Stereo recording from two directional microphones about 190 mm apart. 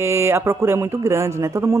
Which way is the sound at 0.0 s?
15° right (ahead or behind).